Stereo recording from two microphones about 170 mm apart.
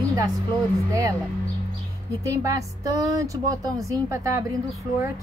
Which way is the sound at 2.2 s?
20° right (ahead or behind).